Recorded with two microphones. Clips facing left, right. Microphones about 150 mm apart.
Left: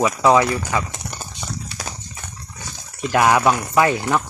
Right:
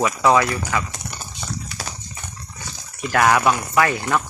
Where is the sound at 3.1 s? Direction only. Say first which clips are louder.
Left 1 dB; 20° left (ahead or behind).